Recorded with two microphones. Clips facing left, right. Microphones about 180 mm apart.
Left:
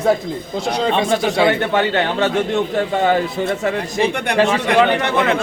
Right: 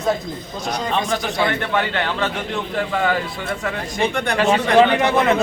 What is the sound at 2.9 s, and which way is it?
Speech, 25° left (ahead or behind).